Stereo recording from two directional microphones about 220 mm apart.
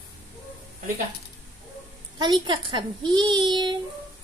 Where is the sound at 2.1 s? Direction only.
20° right (ahead or behind).